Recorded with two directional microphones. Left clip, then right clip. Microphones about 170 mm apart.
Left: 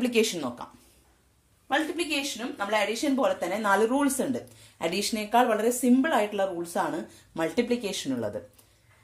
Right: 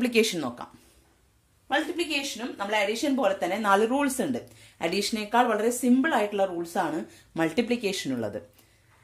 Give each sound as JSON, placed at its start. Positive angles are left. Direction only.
{"t": 0.0, "sound": "speech", "side_deg": -30}
{"t": 1.7, "sound": "speech", "side_deg": -15}